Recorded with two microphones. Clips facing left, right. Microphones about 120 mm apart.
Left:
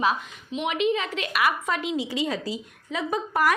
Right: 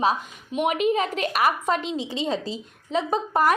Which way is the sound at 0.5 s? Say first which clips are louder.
Right 3 dB; 45° right (ahead or behind).